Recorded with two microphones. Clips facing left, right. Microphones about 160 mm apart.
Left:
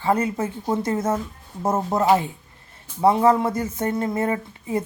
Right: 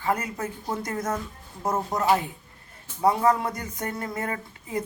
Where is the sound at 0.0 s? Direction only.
30° left (ahead or behind).